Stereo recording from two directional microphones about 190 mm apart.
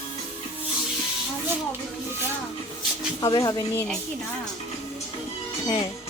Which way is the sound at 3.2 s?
20° left (ahead or behind).